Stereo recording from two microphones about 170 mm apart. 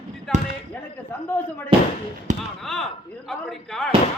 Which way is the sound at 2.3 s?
45° right (ahead or behind).